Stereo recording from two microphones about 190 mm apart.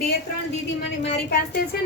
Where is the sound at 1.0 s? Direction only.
60° left (ahead or behind).